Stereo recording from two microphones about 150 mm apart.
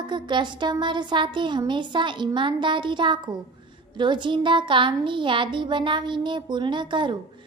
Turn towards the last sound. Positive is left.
turn(degrees=-30)  # may be behind; listen again after turning